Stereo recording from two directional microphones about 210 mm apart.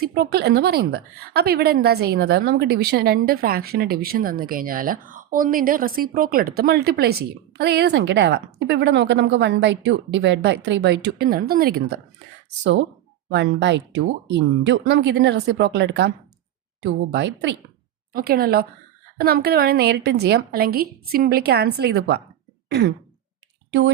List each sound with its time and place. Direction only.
0.0 s a woman's voice: 45° right (ahead or behind)
13.3 s speech: 60° right (ahead or behind)
18.1 s a woman's voice: 45° right (ahead or behind)